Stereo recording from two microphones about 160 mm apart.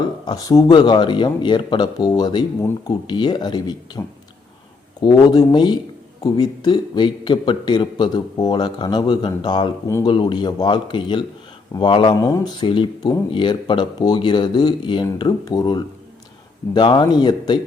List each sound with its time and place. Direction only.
0.0 s speech: 25° left (ahead or behind)